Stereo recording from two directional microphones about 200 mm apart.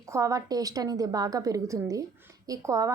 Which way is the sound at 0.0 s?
15° right (ahead or behind).